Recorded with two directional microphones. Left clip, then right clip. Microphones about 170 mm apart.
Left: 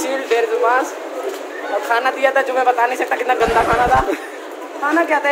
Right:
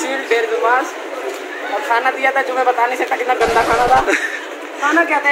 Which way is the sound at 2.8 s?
25° left (ahead or behind).